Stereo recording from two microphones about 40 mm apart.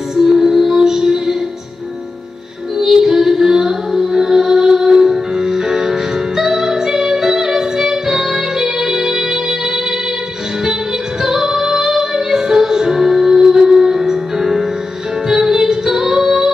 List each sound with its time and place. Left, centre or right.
0.1 s music: centre
2.8 s music: centre
11.2 s music: centre